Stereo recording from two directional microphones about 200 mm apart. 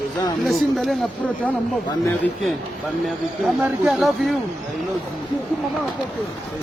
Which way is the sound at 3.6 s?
5° right (ahead or behind).